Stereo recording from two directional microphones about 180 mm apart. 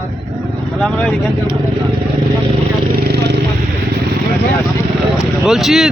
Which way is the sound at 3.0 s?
70° right (ahead or behind).